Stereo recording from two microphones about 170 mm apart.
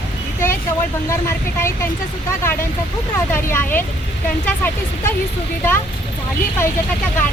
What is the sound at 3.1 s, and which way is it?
Speech, 15° left (ahead or behind).